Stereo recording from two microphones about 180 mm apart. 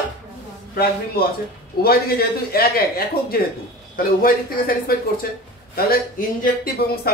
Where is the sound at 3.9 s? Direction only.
55° left (ahead or behind).